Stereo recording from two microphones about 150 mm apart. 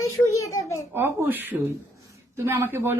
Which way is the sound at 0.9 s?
15° right (ahead or behind).